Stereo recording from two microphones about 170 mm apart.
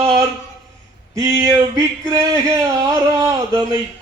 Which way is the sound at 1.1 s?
20° right (ahead or behind).